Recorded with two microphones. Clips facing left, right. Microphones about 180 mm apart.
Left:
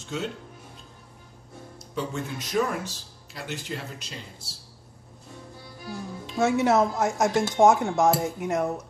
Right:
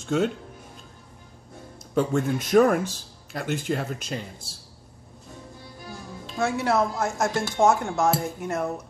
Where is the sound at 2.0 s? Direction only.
50° right (ahead or behind).